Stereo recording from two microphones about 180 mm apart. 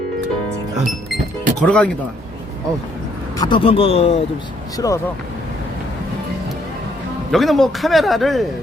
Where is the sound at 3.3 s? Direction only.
25° left (ahead or behind).